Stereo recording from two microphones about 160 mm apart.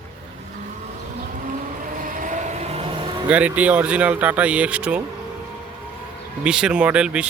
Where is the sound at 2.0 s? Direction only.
55° right (ahead or behind); by 3.1 s 35° right (ahead or behind).